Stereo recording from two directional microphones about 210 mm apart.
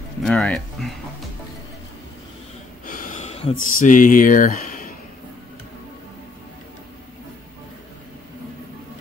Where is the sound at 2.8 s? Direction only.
40° left (ahead or behind).